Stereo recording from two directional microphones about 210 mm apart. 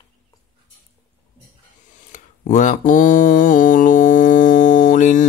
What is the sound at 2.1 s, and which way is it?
Mantra, 35° left (ahead or behind).